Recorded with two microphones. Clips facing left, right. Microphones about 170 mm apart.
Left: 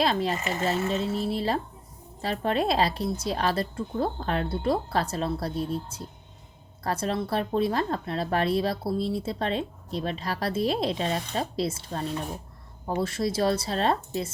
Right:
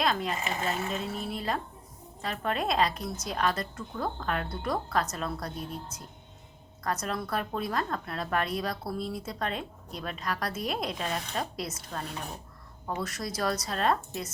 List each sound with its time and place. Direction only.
0.0 s a woman's voice: 30° left (ahead or behind)